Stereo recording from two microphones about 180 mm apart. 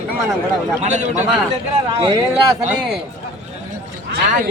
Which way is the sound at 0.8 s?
40° right (ahead or behind).